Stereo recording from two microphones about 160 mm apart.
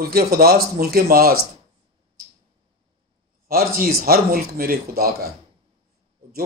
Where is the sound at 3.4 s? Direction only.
70° right (ahead or behind).